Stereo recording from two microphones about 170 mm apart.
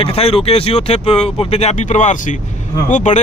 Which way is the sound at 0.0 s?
35° left (ahead or behind).